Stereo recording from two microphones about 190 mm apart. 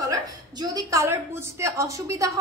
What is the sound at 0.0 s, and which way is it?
A woman's voice, 20° right (ahead or behind).